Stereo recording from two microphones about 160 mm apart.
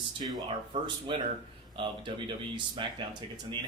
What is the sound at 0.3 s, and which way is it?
Speech, 30° right (ahead or behind).